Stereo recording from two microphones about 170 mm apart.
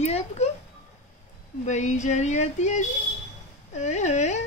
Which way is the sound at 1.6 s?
45° left (ahead or behind).